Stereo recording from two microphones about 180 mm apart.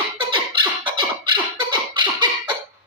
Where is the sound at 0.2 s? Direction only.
25° right (ahead or behind).